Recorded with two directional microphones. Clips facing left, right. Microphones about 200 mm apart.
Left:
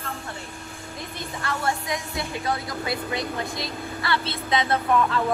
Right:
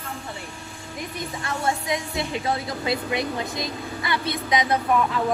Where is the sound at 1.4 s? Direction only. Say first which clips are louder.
Even; 20° right (ahead or behind).